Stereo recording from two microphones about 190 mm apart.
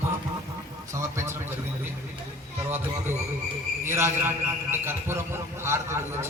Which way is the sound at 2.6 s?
10° right (ahead or behind).